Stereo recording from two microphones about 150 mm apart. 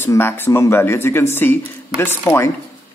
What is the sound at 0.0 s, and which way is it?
Speech, 15° left (ahead or behind).